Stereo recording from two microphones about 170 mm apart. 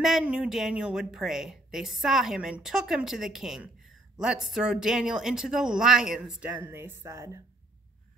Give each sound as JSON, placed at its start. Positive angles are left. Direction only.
{"t": 0.0, "sound": "a woman's voice", "side_deg": -5}
{"t": 6.6, "sound": "speech", "side_deg": -15}